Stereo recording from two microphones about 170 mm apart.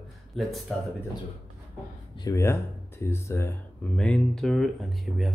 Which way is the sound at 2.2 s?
15° left (ahead or behind).